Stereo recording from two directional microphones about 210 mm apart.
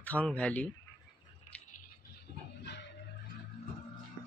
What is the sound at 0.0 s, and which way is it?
Speech, 5° left (ahead or behind).